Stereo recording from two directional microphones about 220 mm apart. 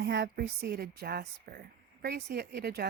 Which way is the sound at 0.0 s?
50° right (ahead or behind).